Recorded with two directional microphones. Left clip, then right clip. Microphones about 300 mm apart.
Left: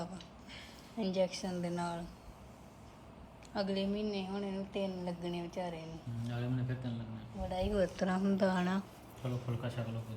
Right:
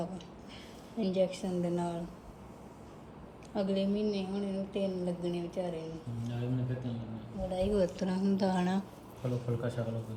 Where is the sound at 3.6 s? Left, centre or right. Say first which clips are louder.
Right 4 dB; centre.